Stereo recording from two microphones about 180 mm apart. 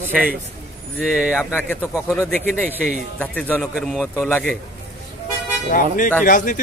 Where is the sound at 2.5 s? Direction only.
10° right (ahead or behind).